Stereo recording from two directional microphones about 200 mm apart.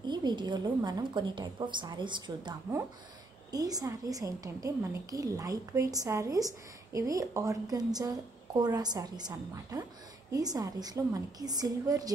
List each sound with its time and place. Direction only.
0.0 s a woman's voice: 20° right (ahead or behind)